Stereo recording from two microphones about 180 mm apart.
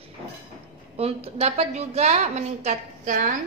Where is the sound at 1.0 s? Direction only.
35° right (ahead or behind).